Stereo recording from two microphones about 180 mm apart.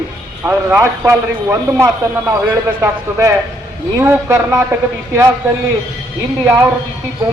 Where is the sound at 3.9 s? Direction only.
15° right (ahead or behind).